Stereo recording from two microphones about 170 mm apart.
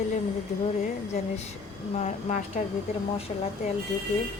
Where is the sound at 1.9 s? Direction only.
45° left (ahead or behind).